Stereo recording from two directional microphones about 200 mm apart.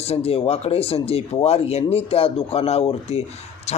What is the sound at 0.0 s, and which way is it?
A man's voice, 30° left (ahead or behind).